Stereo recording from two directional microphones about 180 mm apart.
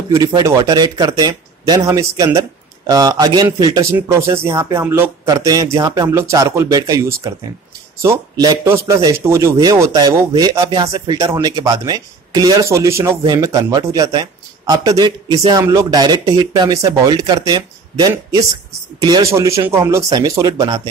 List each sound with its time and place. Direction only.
0.1 s a man's voice: 20° right (ahead or behind)